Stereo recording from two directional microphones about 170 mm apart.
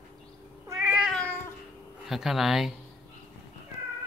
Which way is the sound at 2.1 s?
Centre (ahead or behind).